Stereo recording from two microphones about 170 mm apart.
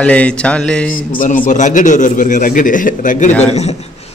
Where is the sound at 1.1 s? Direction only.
50° left (ahead or behind).